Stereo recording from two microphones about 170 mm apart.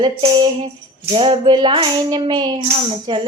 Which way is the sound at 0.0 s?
30° right (ahead or behind).